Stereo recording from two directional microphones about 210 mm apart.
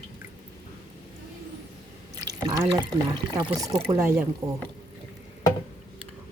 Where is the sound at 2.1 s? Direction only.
20° right (ahead or behind).